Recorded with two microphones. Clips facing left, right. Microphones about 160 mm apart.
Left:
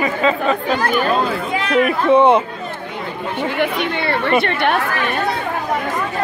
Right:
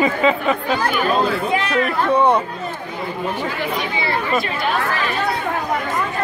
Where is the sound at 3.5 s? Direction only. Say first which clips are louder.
Left 4 dB; 65° left (ahead or behind).